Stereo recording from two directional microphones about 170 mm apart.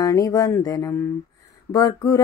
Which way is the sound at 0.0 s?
20° left (ahead or behind).